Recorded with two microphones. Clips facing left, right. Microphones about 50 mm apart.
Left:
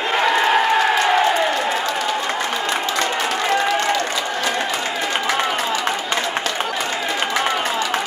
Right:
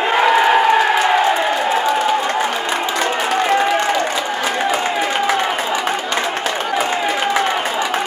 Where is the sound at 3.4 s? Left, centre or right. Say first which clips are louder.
Right 3 dB; centre.